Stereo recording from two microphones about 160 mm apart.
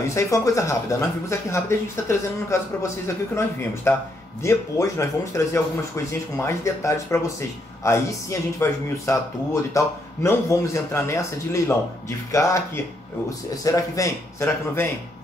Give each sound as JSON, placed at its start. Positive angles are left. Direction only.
{"t": 0.1, "sound": "speech", "side_deg": 20}